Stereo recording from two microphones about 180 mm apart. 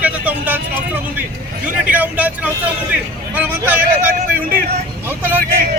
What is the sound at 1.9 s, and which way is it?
Speech, 10° right (ahead or behind).